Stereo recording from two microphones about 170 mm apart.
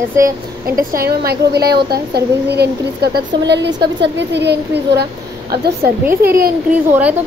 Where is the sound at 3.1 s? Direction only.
90° right; by 5.7 s 70° right (ahead or behind).